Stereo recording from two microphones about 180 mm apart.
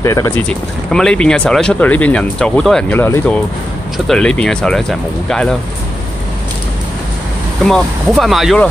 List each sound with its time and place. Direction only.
0.0 s speech: 15° left (ahead or behind)
0.9 s speech: 5° left (ahead or behind)
7.6 s speech: centre (ahead or behind)